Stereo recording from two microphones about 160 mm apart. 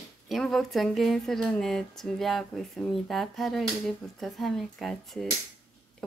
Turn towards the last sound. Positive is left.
turn(degrees=0)  # may be behind; listen again after turning